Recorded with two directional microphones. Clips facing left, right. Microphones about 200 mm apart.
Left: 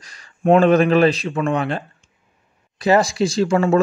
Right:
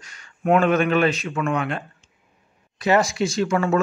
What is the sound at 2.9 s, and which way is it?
Speech, 35° left (ahead or behind).